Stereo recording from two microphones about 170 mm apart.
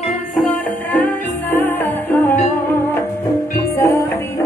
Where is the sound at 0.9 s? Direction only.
10° left (ahead or behind).